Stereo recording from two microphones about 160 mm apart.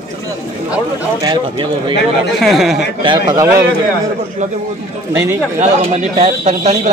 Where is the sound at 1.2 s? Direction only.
30° right (ahead or behind).